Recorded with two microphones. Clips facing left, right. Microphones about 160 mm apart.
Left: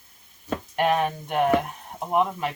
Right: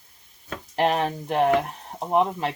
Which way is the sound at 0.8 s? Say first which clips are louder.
Right 1 dB; 30° right (ahead or behind).